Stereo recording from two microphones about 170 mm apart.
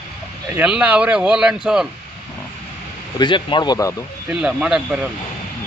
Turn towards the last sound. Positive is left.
turn(degrees=-5)  # may be behind; listen again after turning